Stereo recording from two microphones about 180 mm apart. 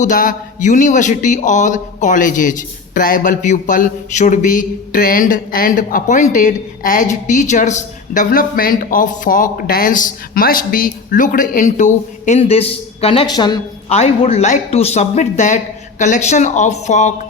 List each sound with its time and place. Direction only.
0.0 s a man's voice: 45° left (ahead or behind); by 13.6 s 25° left (ahead or behind)
13.9 s speech: 35° left (ahead or behind)